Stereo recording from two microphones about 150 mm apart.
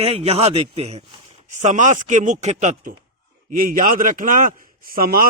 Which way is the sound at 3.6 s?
65° right (ahead or behind).